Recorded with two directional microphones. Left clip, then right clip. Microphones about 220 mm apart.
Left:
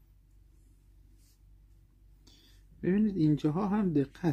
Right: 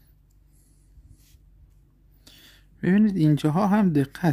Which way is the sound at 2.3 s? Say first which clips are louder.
Right 11 dB; 40° right (ahead or behind).